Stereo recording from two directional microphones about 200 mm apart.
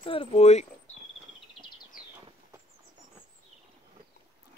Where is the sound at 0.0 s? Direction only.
25° left (ahead or behind).